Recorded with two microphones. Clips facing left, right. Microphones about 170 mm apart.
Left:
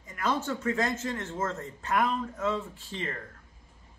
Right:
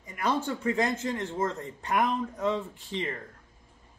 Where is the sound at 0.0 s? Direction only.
15° right (ahead or behind).